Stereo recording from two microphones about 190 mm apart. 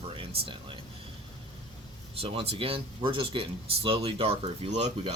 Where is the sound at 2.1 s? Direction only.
30° right (ahead or behind).